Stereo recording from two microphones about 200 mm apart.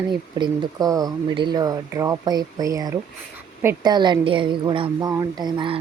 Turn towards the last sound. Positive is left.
turn(degrees=-25)  # may be behind; listen again after turning